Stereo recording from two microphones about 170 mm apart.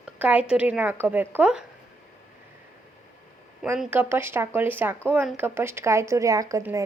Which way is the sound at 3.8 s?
10° right (ahead or behind).